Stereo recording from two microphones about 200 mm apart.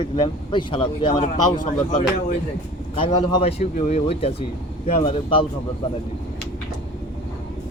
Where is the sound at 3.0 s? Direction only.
20° left (ahead or behind).